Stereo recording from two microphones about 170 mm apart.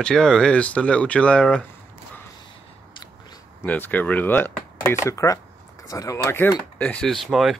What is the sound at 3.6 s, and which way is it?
Speech, 10° left (ahead or behind).